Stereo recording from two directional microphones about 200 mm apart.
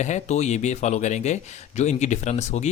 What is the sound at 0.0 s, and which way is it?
Speech, 35° left (ahead or behind).